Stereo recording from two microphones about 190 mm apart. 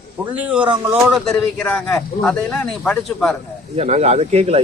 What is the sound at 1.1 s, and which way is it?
A man's voice, 5° left (ahead or behind).